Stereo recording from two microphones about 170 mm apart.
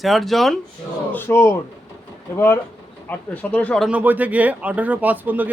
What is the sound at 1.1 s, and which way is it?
Speech, 15° left (ahead or behind).